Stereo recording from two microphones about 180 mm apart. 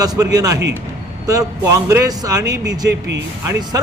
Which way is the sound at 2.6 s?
75° right (ahead or behind).